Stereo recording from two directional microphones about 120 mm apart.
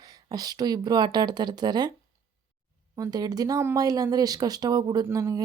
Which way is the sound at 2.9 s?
30° right (ahead or behind).